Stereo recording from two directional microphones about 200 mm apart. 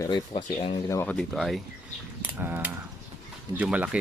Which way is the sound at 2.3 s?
10° right (ahead or behind).